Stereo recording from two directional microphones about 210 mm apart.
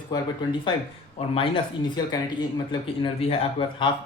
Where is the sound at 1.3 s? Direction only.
25° left (ahead or behind).